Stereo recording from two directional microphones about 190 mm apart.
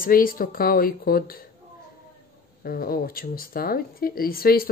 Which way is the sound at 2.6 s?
50° left (ahead or behind).